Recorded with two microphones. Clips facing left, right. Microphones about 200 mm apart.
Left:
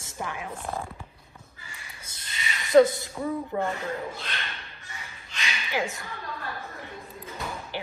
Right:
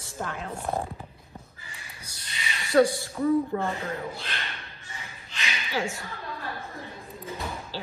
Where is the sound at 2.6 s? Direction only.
20° left (ahead or behind).